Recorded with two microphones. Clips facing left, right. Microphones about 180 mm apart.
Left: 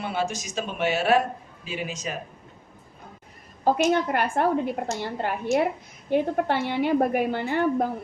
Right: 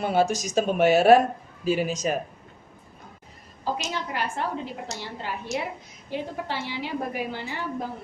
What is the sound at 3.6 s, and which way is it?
A woman's voice, 55° left (ahead or behind).